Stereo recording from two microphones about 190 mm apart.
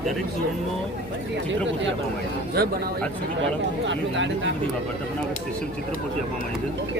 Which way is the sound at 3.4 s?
75° right (ahead or behind).